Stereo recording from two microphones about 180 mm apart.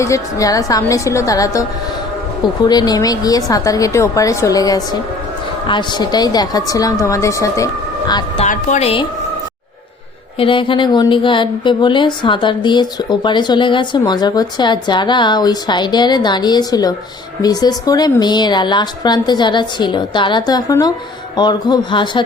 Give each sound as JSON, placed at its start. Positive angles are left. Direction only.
{"t": 0.0, "sound": "a woman's voice", "side_deg": 15}
{"t": 2.6, "sound": "speech", "side_deg": 20}
{"t": 8.4, "sound": "a woman's voice", "side_deg": 40}
{"t": 10.3, "sound": "speech", "side_deg": 30}